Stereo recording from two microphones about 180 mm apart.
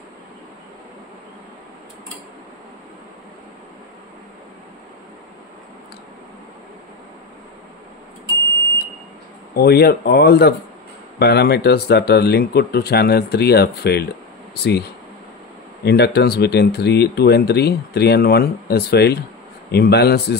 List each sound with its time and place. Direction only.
9.5 s speech: 60° left (ahead or behind)